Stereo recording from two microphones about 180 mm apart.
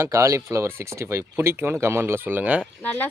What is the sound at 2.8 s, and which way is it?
Speech, 10° left (ahead or behind).